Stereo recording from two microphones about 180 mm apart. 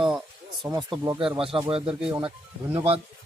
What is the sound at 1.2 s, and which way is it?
Speech, 30° right (ahead or behind).